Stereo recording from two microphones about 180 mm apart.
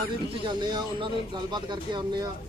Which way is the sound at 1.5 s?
25° right (ahead or behind).